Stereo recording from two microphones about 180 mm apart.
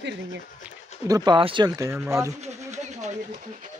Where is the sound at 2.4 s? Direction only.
40° right (ahead or behind).